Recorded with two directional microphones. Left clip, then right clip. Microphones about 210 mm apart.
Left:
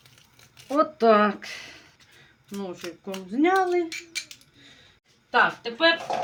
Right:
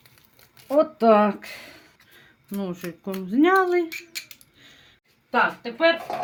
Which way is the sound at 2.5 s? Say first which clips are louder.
Right 2 dB; 55° right (ahead or behind).